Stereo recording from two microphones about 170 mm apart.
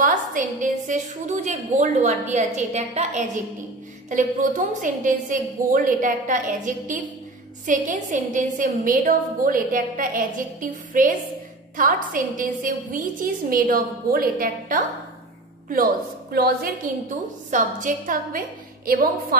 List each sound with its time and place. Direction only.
0.0 s a woman's voice: 50° right (ahead or behind)
17.5 s a woman's voice: 50° right (ahead or behind)